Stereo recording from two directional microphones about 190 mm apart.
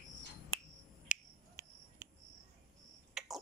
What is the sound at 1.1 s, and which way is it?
Finger snapping, 40° left (ahead or behind).